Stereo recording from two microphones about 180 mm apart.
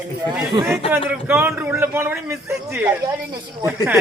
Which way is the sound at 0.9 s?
10° right (ahead or behind).